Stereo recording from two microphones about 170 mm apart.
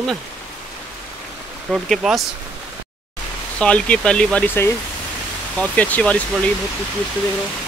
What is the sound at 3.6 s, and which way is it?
Speech, 5° left (ahead or behind).